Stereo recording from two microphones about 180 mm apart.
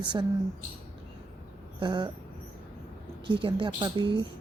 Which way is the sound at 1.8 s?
25° right (ahead or behind).